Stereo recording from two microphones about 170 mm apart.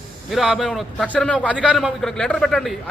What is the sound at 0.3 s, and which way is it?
A man's voice, centre (ahead or behind).